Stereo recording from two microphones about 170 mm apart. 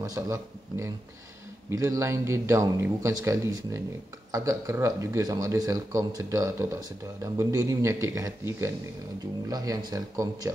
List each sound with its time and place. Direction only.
0.0 s speech: 20° right (ahead or behind)